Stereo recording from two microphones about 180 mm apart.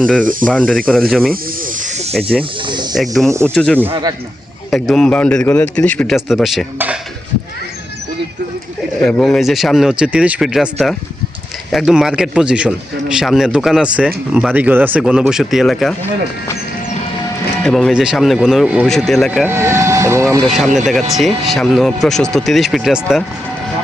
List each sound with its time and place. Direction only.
0.0 s speech: 5° left (ahead or behind)
1.8 s snake: 40° right (ahead or behind)
2.9 s speech: centre (ahead or behind)
9.0 s speech: 5° left (ahead or behind)
17.6 s speech: 5° left (ahead or behind)
19.5 s speech: 15° right (ahead or behind)
20.7 s speech: centre (ahead or behind)